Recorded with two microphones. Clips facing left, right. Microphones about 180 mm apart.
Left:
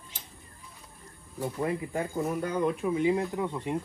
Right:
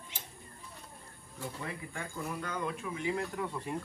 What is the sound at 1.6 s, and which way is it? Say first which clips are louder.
Speech: left 14 dB; 35° left (ahead or behind).